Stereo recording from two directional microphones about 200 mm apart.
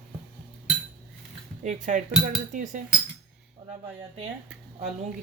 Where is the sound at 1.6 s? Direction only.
40° right (ahead or behind).